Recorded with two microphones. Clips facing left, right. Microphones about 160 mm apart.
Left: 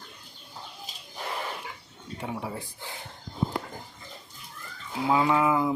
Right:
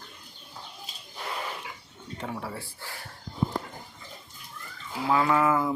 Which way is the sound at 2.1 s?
10° left (ahead or behind).